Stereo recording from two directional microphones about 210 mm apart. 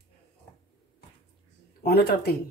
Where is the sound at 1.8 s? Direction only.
50° left (ahead or behind).